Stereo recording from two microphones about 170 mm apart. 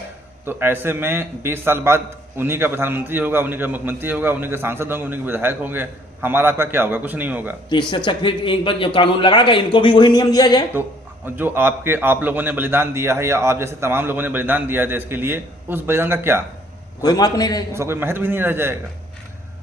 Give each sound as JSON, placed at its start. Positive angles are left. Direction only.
{"t": 0.4, "sound": "a man's voice", "side_deg": -15}
{"t": 7.7, "sound": "a man's voice", "side_deg": 25}
{"t": 11.3, "sound": "a man's voice", "side_deg": -10}
{"t": 17.0, "sound": "a man's voice", "side_deg": 25}
{"t": 17.7, "sound": "a man's voice", "side_deg": -15}